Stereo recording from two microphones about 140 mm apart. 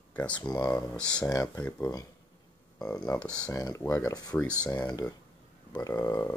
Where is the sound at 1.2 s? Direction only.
25° left (ahead or behind).